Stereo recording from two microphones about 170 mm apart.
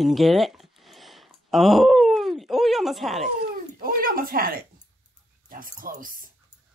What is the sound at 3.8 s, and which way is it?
Speech, 60° right (ahead or behind).